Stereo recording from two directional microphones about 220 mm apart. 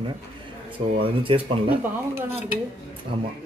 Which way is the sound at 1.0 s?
25° right (ahead or behind).